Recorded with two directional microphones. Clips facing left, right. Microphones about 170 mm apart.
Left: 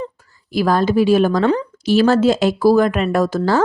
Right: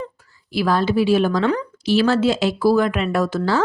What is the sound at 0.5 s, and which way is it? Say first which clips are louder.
Speech: left 3 dB; 45° left (ahead or behind).